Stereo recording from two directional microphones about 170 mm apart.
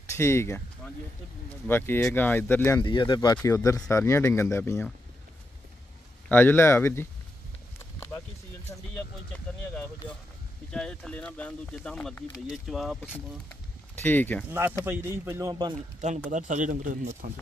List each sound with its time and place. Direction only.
0.1 s speech: 15° left (ahead or behind)
2.8 s speech: 30° left (ahead or behind)
6.2 s speech: 10° left (ahead or behind)
7.8 s a sound: 15° left (ahead or behind)
8.7 s speech: 20° left (ahead or behind)
10.7 s speech: 5° left (ahead or behind)
13.5 s a sound: 10° left (ahead or behind)
14.9 s speech: 15° right (ahead or behind)
16.0 s speech: 45° right (ahead or behind)